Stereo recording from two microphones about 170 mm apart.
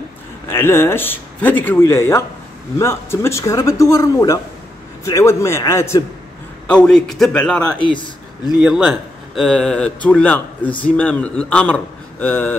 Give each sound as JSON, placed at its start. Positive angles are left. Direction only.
{"t": 0.5, "sound": "speech", "side_deg": 15}
{"t": 6.7, "sound": "speech", "side_deg": 5}